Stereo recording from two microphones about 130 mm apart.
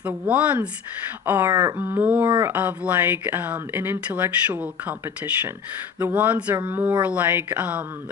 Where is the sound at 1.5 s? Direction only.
30° right (ahead or behind).